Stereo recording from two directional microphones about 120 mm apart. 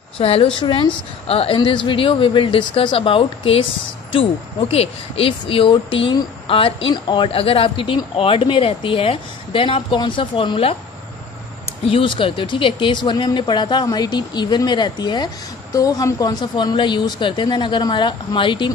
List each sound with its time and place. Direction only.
0.2 s speech: 55° left (ahead or behind)
0.6 s speech: 40° left (ahead or behind)
1.2 s speech: 55° left (ahead or behind)
1.6 s speech: 45° left (ahead or behind)
11.8 s speech: 45° left (ahead or behind)